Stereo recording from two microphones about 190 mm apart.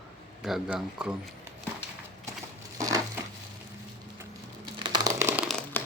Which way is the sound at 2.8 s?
20° right (ahead or behind).